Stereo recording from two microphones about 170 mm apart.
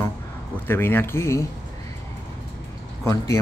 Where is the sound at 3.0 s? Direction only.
20° left (ahead or behind).